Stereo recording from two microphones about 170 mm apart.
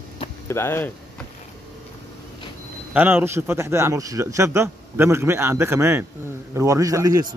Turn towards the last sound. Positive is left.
turn(degrees=-20)  # may be behind; listen again after turning